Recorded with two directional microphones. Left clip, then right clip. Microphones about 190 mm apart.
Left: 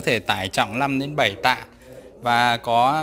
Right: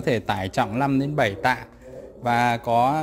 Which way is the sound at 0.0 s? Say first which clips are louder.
Left 2 dB; 10° right (ahead or behind).